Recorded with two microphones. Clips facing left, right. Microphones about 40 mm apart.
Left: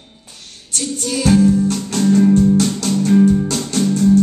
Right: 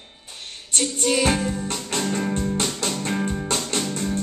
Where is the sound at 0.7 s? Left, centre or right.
Right.